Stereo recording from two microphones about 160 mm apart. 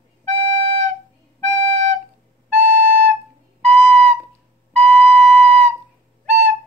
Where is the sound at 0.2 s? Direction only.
45° right (ahead or behind).